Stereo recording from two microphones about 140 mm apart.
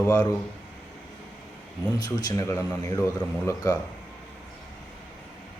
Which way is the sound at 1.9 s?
25° left (ahead or behind).